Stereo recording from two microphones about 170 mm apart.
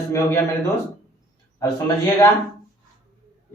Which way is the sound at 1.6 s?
20° left (ahead or behind).